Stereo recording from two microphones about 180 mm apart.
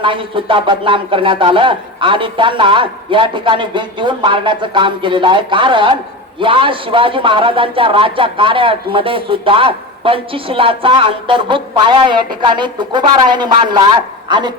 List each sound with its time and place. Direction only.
0.0 s speech: 30° right (ahead or behind)